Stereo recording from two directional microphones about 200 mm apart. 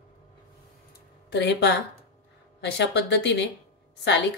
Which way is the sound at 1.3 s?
60° left (ahead or behind).